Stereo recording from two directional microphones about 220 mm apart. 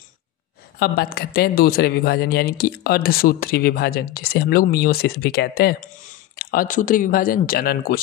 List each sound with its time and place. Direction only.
0.7 s a man's voice: 45° left (ahead or behind)